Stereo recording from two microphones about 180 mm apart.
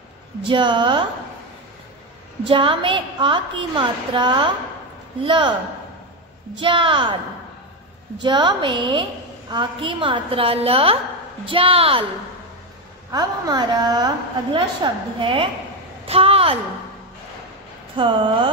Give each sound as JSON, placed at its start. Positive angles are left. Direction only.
{"t": 0.4, "sound": "a woman's voice", "side_deg": -25}
{"t": 2.4, "sound": "a woman's voice", "side_deg": -30}
{"t": 6.5, "sound": "a woman's voice", "side_deg": -25}
{"t": 8.2, "sound": "a woman's voice", "side_deg": -25}
{"t": 13.1, "sound": "a woman's voice", "side_deg": -20}
{"t": 17.9, "sound": "a woman's voice", "side_deg": -25}